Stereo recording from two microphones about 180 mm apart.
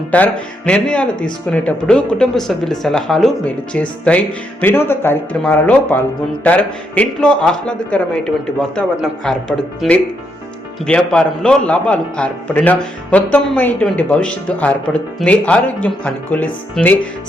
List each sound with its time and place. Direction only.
0.1 s a man's voice: 5° left (ahead or behind)